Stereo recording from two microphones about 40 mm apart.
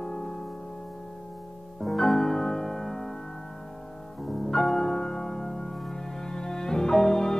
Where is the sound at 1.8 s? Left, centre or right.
Centre.